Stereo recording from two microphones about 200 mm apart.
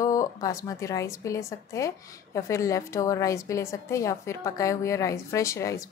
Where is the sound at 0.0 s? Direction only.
15° left (ahead or behind).